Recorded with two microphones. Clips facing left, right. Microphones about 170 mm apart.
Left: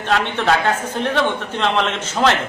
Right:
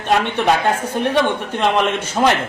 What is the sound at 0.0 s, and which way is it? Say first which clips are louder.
A man's voice: right 2 dB; 15° right (ahead or behind).